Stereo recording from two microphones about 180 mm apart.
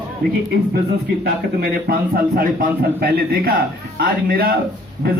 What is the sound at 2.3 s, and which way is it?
A man's voice, 55° right (ahead or behind).